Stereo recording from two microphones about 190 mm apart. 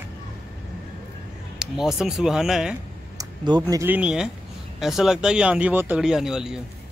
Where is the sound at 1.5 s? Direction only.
Centre (ahead or behind).